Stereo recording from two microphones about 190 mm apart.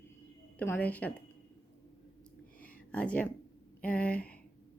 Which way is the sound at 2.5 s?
10° left (ahead or behind).